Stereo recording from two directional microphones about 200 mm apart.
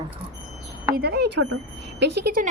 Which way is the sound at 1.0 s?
50° right (ahead or behind).